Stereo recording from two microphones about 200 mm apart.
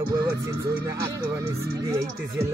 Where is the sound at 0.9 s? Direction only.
15° right (ahead or behind).